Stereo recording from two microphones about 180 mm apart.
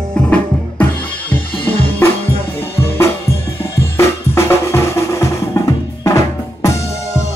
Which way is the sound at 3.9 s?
15° left (ahead or behind).